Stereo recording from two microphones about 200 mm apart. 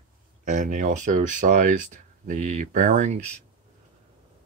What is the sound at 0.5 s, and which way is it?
Speech, 40° right (ahead or behind).